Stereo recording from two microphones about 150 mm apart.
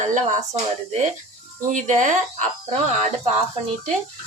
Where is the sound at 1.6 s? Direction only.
55° right (ahead or behind).